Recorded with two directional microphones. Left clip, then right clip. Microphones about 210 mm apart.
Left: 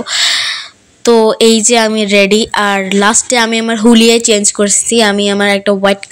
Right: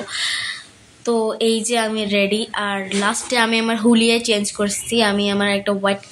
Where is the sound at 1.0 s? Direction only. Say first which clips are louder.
Left 11 dB; 40° left (ahead or behind).